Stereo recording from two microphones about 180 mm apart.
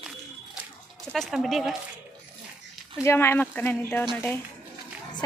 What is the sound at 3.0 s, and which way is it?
Speech, 15° left (ahead or behind).